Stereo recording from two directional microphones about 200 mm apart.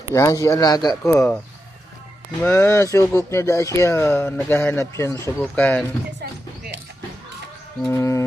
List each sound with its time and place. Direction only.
0.1 s speech: 15° left (ahead or behind)
1.1 s speech: 5° left (ahead or behind)
2.4 s speech: 10° left (ahead or behind)
7.8 s speech: 10° left (ahead or behind)